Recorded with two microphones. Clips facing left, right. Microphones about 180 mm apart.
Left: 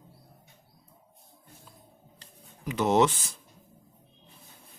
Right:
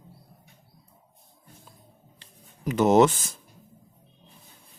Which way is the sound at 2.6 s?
45° right (ahead or behind).